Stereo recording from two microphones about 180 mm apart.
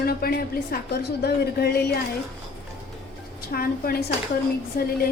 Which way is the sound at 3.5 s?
55° left (ahead or behind).